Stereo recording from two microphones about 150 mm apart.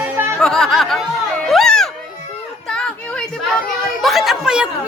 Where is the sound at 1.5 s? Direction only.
Centre (ahead or behind).